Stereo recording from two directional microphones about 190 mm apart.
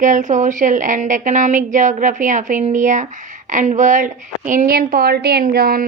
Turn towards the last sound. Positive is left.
turn(degrees=-55)  # may be behind; listen again after turning